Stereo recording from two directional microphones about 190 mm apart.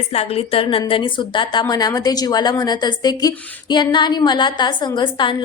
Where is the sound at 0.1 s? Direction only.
30° left (ahead or behind).